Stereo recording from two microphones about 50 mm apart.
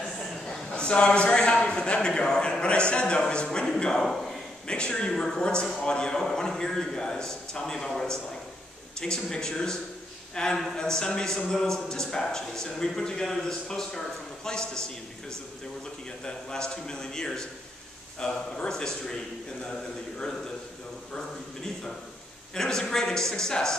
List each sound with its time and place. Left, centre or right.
0.0 s a man's voice: centre
3.9 s speech: centre
4.6 s a man's voice: centre
16.3 s a man's voice: centre
22.5 s a man's voice: centre